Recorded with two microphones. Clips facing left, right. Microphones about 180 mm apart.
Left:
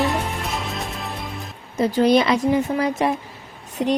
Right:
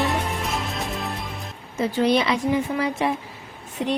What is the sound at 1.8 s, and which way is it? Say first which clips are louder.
A woman's voice: left 4 dB; 40° left (ahead or behind).